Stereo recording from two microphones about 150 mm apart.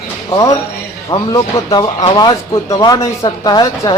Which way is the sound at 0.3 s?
25° left (ahead or behind).